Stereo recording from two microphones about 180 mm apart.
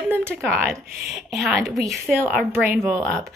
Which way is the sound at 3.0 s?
5° left (ahead or behind).